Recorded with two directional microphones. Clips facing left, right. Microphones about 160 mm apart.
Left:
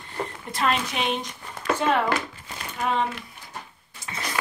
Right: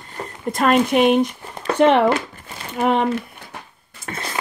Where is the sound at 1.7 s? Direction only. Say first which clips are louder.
Right 8 dB; 70° right (ahead or behind).